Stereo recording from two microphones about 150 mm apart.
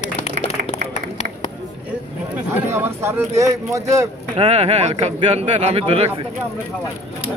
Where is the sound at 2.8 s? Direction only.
15° right (ahead or behind).